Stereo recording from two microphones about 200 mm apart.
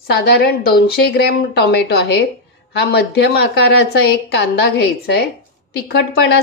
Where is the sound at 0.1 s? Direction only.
55° left (ahead or behind).